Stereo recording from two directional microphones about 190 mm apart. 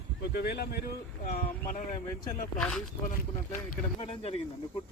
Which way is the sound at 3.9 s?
30° left (ahead or behind).